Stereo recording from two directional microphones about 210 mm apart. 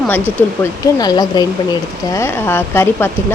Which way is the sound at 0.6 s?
20° left (ahead or behind).